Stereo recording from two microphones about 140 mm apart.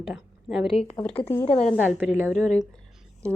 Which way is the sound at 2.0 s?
15° right (ahead or behind).